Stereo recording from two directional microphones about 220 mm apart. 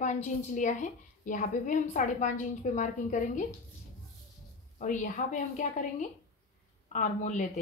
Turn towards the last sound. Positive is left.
turn(degrees=35)  # may be behind; listen again after turning